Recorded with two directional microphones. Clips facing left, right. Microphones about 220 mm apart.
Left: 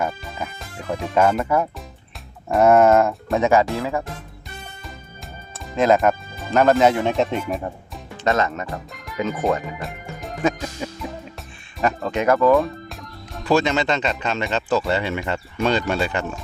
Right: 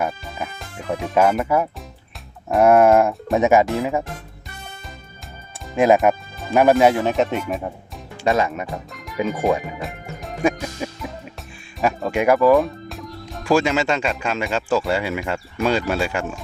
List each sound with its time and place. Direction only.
0.0 s speech: 5° right (ahead or behind)
5.7 s speech: 15° right (ahead or behind)
8.6 s music: centre (ahead or behind)
9.4 s speech: centre (ahead or behind)
10.8 s music: 10° right (ahead or behind)
11.9 s speech: 10° right (ahead or behind)